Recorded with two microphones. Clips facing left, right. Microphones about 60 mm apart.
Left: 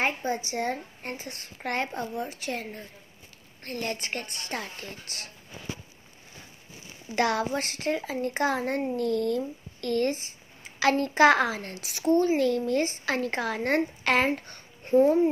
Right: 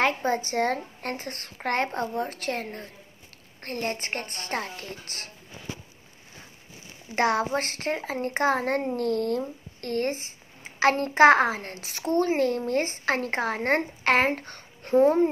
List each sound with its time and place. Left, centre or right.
0.2 s speech: right
3.6 s a woman's voice: right
7.2 s a child's voice: right
14.8 s speech: right